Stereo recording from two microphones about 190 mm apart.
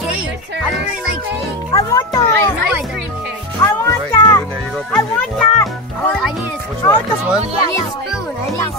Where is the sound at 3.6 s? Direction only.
10° left (ahead or behind).